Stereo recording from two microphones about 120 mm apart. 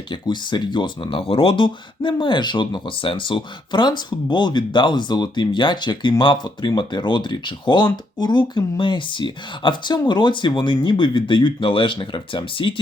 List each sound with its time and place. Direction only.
0.1 s speech: 40° left (ahead or behind)